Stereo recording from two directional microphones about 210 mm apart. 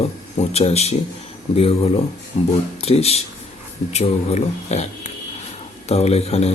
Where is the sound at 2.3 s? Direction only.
30° left (ahead or behind).